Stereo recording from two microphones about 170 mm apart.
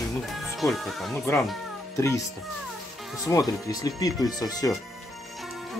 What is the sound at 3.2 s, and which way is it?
Speech, 20° left (ahead or behind).